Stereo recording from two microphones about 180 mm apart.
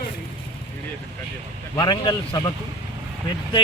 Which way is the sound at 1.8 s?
25° left (ahead or behind).